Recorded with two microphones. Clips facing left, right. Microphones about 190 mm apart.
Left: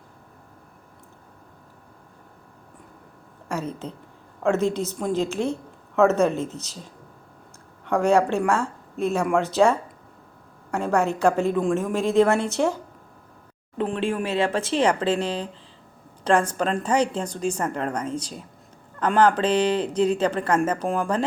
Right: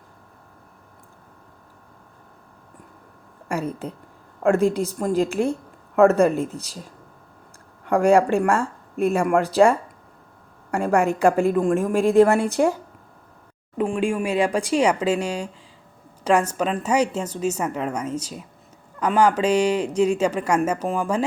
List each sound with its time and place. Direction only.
3.5 s speech: 10° right (ahead or behind)